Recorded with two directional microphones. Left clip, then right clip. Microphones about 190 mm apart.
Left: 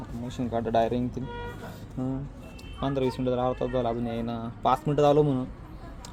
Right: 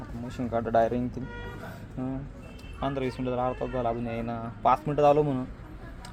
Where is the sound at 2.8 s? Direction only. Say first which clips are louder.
Left 3 dB; 35° left (ahead or behind).